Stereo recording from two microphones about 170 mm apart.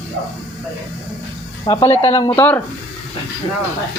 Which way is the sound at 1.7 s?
25° left (ahead or behind).